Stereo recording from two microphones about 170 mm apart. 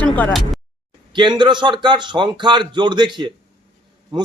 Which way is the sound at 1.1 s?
25° right (ahead or behind).